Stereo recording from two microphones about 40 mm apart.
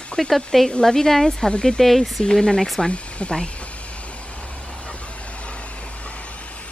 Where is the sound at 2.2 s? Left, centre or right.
Centre.